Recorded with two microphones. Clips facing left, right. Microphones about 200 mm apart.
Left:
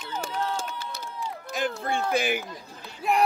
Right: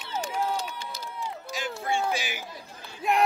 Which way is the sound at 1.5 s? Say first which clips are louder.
Left 2 dB; 55° left (ahead or behind).